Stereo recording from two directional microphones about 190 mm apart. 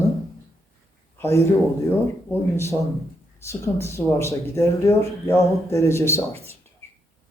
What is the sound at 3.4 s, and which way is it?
Speech, 15° left (ahead or behind).